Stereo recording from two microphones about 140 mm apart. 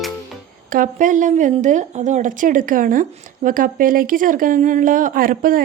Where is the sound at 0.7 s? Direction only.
70° right (ahead or behind).